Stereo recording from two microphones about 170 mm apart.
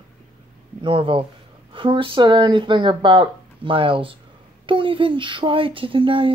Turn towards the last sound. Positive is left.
turn(degrees=-30)  # may be behind; listen again after turning